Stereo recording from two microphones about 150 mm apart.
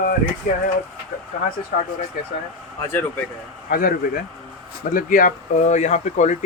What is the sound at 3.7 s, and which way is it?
Speech, 75° left (ahead or behind).